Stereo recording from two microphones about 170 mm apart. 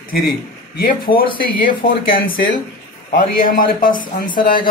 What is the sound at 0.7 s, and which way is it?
A man's voice, 55° left (ahead or behind).